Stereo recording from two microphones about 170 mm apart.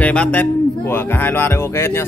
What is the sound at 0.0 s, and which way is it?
Speech, 5° left (ahead or behind).